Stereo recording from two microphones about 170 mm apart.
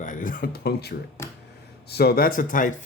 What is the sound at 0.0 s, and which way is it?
Speech, 50° left (ahead or behind).